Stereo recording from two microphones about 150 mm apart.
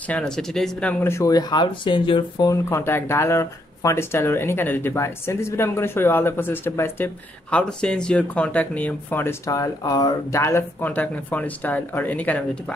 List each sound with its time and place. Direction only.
0.1 s speech: 5° left (ahead or behind); by 2.5 s 30° left (ahead or behind)
2.5 s speech: 15° left (ahead or behind)